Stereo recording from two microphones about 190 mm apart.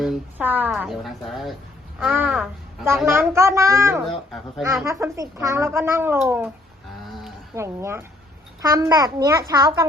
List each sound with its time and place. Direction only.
0.0 s a woman's voice: 5° right (ahead or behind)
4.3 s a woman's voice: centre (ahead or behind)
4.9 s speech: 15° right (ahead or behind)
7.1 s a sound: centre (ahead or behind)
7.5 s a child's voice: 15° right (ahead or behind)